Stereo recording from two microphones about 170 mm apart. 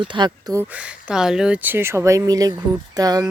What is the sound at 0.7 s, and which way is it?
Speech, 5° right (ahead or behind).